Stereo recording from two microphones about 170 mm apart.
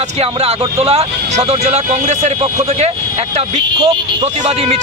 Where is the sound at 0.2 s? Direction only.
35° right (ahead or behind).